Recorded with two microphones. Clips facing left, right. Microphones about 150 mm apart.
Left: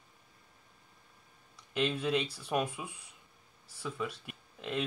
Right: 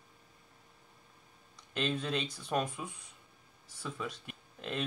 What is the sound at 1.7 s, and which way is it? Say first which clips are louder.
Speech: left 3 dB; 5° left (ahead or behind).